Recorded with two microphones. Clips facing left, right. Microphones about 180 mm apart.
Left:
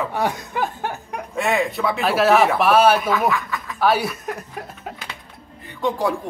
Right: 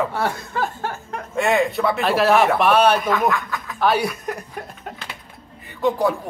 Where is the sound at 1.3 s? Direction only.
Centre (ahead or behind).